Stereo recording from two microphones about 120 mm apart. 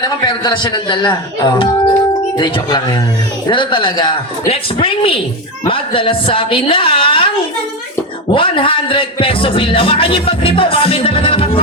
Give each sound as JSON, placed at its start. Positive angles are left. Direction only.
{"t": 0.0, "sound": "a man's voice", "side_deg": 40}
{"t": 8.3, "sound": "a man's voice", "side_deg": 45}